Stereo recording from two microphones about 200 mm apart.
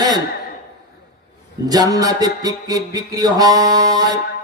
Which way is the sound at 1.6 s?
20° right (ahead or behind).